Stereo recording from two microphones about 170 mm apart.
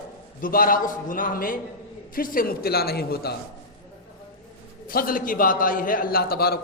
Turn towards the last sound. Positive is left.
turn(degrees=65)  # may be behind; listen again after turning